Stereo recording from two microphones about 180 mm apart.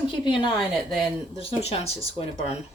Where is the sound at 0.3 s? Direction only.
30° left (ahead or behind).